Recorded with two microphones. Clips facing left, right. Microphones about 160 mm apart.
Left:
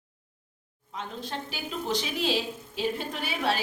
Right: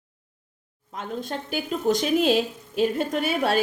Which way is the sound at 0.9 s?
50° right (ahead or behind).